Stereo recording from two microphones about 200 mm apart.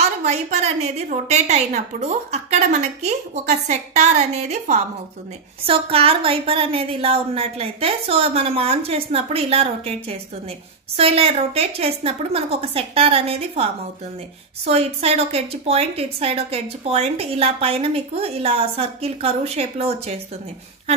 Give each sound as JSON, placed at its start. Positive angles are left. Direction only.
{"t": 0.2, "sound": "a woman's voice", "side_deg": -35}